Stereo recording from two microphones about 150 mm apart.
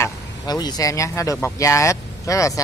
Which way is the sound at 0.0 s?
25° left (ahead or behind).